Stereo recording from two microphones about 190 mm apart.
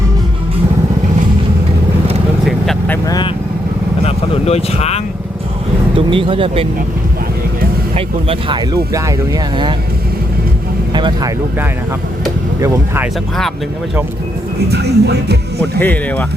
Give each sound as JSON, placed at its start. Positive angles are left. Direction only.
{"t": 2.4, "sound": "vehicle", "side_deg": 0}
{"t": 3.1, "sound": "vehicle", "side_deg": 25}
{"t": 4.0, "sound": "speech", "side_deg": 35}
{"t": 6.1, "sound": "speech", "side_deg": -25}
{"t": 7.9, "sound": "speech", "side_deg": -30}
{"t": 10.9, "sound": "speech", "side_deg": -25}
{"t": 12.5, "sound": "speech", "side_deg": -15}
{"t": 14.7, "sound": "speech", "side_deg": -60}
{"t": 15.8, "sound": "speech", "side_deg": 10}